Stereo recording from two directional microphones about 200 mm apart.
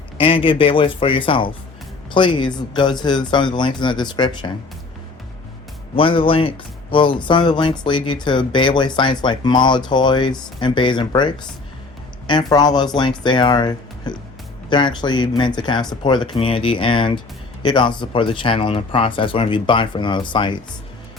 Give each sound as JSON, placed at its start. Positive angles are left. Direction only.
{"t": 0.2, "sound": "speech", "side_deg": 25}
{"t": 6.0, "sound": "speech", "side_deg": 25}